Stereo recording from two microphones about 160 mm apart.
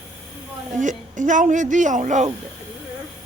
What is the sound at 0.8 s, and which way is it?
A woman's voice, 50° right (ahead or behind).